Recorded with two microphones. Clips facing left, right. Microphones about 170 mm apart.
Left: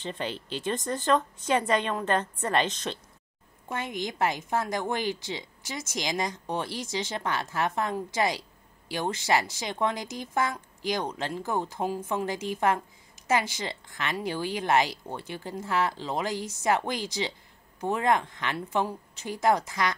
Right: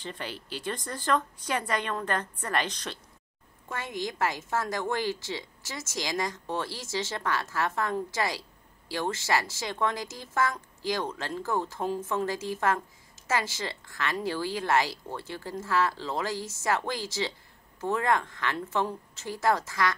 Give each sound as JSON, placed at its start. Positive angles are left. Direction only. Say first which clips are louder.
{"t": 0.0, "sound": "a woman's voice", "louder": "left 4 dB", "side_deg": 20}